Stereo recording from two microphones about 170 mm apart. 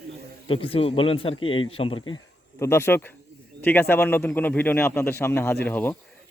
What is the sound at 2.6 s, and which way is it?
A man's voice, 15° left (ahead or behind).